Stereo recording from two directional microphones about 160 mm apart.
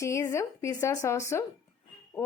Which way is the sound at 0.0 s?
20° left (ahead or behind).